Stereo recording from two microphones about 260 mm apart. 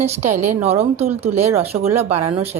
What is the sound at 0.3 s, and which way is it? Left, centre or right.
Speech, right.